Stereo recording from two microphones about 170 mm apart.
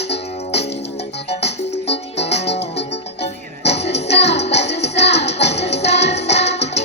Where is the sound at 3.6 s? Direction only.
40° left (ahead or behind).